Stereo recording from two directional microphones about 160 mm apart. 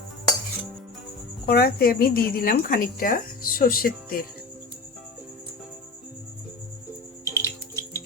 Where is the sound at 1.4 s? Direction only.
75° left (ahead or behind).